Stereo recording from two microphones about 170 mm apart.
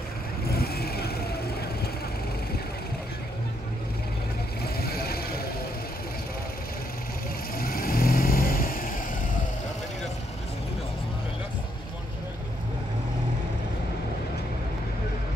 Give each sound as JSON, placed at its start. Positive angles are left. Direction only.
{"t": 0.5, "sound": "vehicle", "side_deg": 65}
{"t": 4.7, "sound": "vehicle", "side_deg": 65}
{"t": 7.5, "sound": "vehicle", "side_deg": 60}